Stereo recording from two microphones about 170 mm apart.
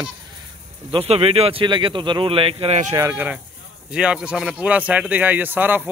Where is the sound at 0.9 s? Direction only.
35° right (ahead or behind).